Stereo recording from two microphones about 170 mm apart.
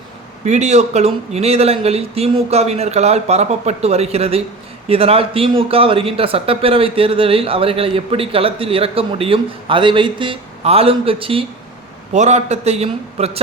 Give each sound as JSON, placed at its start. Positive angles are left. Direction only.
{"t": 0.4, "sound": "a man's voice", "side_deg": -40}